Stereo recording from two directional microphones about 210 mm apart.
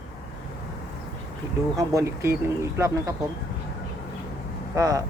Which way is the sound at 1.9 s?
15° right (ahead or behind).